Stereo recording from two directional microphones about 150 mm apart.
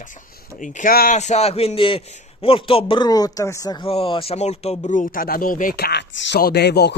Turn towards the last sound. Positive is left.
turn(degrees=90)